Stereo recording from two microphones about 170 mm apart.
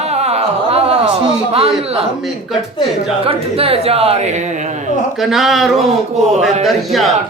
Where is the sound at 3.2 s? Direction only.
35° right (ahead or behind).